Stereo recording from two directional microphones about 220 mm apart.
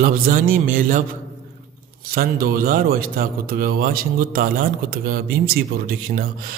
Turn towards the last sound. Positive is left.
turn(degrees=-40)  # may be behind; listen again after turning